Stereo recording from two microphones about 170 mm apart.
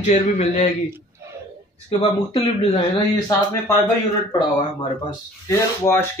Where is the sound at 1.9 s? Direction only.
35° left (ahead or behind).